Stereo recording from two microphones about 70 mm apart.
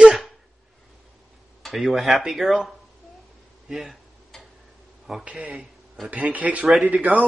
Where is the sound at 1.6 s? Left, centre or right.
Centre.